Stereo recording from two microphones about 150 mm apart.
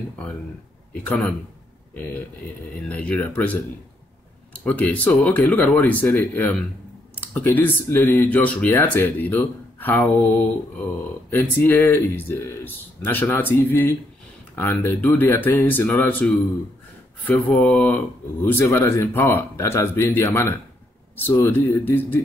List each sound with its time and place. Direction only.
1.0 s speech: 10° left (ahead or behind)
4.6 s speech: 10° left (ahead or behind)
11.2 s speech: 15° left (ahead or behind)